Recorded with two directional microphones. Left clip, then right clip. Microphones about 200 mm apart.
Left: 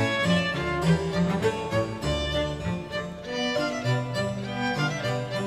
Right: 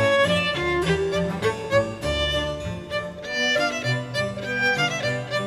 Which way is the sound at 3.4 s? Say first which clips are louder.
Right 5 dB; 50° right (ahead or behind).